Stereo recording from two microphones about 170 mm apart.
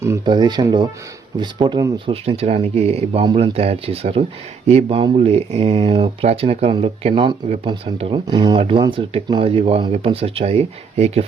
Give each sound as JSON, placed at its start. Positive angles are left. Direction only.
{"t": 0.3, "sound": "speech", "side_deg": -25}